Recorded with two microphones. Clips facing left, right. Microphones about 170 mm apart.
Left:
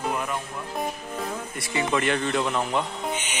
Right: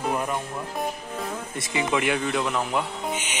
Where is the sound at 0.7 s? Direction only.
Centre (ahead or behind).